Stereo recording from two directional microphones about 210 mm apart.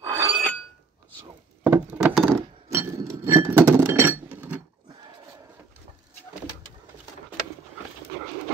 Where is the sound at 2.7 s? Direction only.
15° right (ahead or behind).